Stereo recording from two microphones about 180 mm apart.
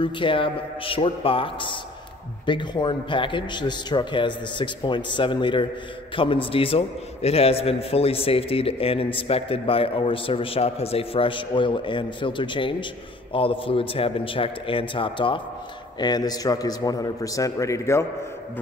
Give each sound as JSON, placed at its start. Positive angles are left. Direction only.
{"t": 0.0, "sound": "a man's voice", "side_deg": 30}